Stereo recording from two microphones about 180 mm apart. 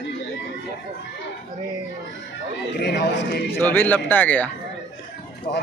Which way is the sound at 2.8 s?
70° left (ahead or behind).